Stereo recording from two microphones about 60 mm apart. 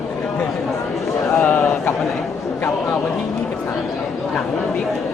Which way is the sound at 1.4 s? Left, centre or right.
Left.